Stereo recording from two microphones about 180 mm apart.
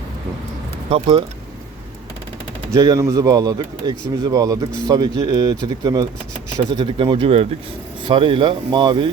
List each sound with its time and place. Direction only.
0.9 s a man's voice: 30° right (ahead or behind)
2.7 s a man's voice: 20° right (ahead or behind)